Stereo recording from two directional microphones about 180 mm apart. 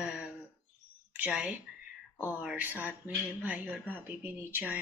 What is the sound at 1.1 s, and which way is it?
Speech, 10° right (ahead or behind).